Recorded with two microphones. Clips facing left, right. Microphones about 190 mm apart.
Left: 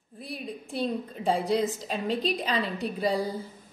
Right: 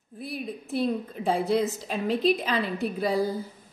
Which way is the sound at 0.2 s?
5° right (ahead or behind).